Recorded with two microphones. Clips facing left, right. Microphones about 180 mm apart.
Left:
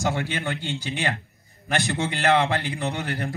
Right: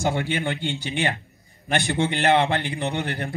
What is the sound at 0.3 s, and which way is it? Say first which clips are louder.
A man's voice: right 3 dB; 15° right (ahead or behind).